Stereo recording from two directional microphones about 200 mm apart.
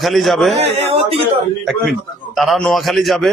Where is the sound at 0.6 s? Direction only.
30° right (ahead or behind).